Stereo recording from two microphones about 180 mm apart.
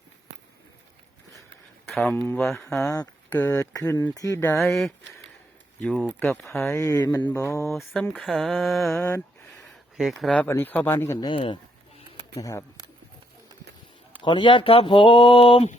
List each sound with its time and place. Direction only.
1.9 s speech: centre (ahead or behind)
2.8 s speech: 15° left (ahead or behind)
4.6 s speech: centre (ahead or behind)
6.7 s speech: 20° left (ahead or behind)
7.7 s speech: centre (ahead or behind)
11.3 s speech: 30° left (ahead or behind)
12.4 s speech: 15° left (ahead or behind)
14.2 s speech: 25° left (ahead or behind)